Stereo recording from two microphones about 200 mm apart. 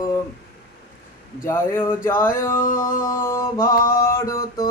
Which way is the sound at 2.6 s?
45° left (ahead or behind).